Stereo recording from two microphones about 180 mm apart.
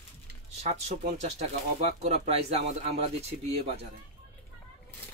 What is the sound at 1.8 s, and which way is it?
A man's voice, 35° right (ahead or behind).